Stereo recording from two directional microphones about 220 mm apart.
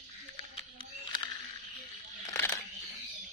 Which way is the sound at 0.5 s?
20° left (ahead or behind).